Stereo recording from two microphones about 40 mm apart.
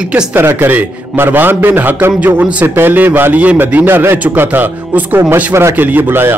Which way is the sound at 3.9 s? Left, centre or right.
Right.